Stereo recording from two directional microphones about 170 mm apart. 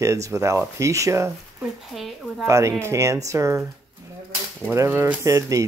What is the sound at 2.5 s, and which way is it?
Speech, 15° right (ahead or behind).